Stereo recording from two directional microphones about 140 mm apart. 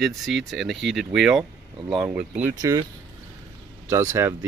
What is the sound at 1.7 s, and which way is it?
Speech, 35° right (ahead or behind).